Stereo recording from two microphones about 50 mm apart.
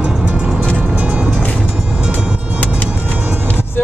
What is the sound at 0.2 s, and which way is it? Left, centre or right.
Music, right.